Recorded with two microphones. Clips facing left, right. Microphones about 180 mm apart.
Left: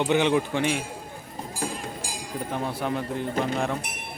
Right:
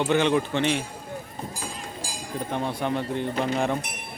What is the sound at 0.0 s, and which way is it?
Speech, 15° left (ahead or behind).